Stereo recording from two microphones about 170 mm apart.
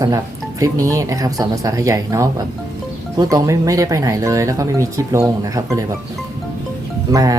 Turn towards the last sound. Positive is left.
turn(degrees=-20)  # may be behind; listen again after turning